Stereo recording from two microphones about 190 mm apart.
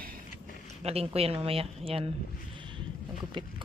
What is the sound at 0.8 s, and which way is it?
Speech, 30° right (ahead or behind).